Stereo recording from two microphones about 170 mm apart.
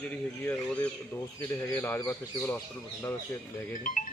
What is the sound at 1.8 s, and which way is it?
Speech, 15° left (ahead or behind).